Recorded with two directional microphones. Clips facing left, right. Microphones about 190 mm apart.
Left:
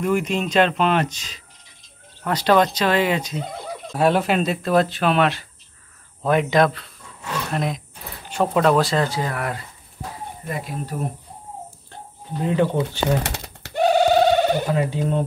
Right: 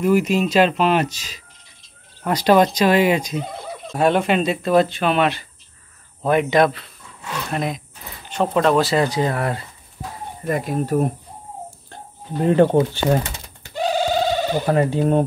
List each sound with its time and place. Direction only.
0.0 s speech: 5° right (ahead or behind)
3.9 s speech: 5° left (ahead or behind)
8.9 s speech: 15° right (ahead or behind)
10.4 s speech: 50° right (ahead or behind)
12.4 s speech: 50° right (ahead or behind)
13.2 s pigeon: 70° left (ahead or behind)
14.7 s speech: 50° right (ahead or behind)